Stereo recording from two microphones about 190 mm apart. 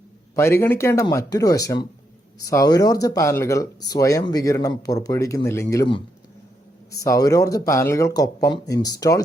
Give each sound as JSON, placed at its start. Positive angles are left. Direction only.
{"t": 0.3, "sound": "speech", "side_deg": 15}
{"t": 6.9, "sound": "speech", "side_deg": 20}